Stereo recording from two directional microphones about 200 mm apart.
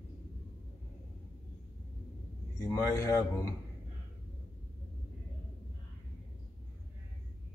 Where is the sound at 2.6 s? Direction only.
15° left (ahead or behind).